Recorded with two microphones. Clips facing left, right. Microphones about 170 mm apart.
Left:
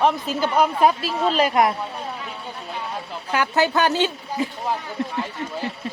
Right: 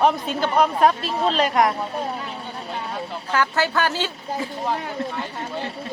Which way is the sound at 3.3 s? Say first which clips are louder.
Left 2 dB; 15° left (ahead or behind).